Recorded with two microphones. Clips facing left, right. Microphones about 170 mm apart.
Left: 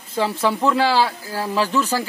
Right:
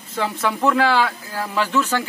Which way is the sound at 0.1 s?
30° left (ahead or behind).